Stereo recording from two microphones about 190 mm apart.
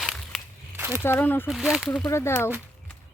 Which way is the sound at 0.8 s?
10° right (ahead or behind).